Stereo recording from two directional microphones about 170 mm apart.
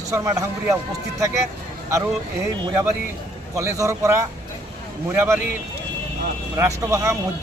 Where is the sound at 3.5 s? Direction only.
20° right (ahead or behind).